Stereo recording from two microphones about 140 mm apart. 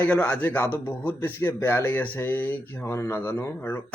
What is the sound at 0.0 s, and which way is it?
Speech, 10° left (ahead or behind).